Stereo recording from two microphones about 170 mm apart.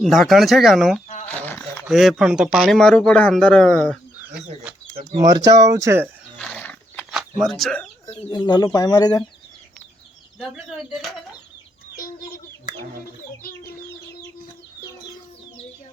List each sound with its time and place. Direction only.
0.0 s speech: centre (ahead or behind)
1.0 s a sound: 45° left (ahead or behind)
1.3 s speech: 10° left (ahead or behind)
5.1 s speech: 20° right (ahead or behind)
6.4 s wild animals: 10° left (ahead or behind)
7.4 s speech: centre (ahead or behind)
8.1 s speech: 25° left (ahead or behind)
10.4 s speech: 5° right (ahead or behind)
11.9 s chicken: 60° left (ahead or behind)